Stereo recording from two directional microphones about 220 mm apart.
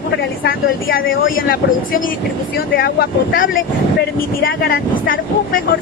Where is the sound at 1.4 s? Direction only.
40° left (ahead or behind).